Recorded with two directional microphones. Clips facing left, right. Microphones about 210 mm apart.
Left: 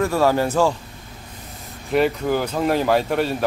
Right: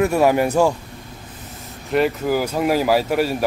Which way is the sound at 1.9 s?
Centre (ahead or behind).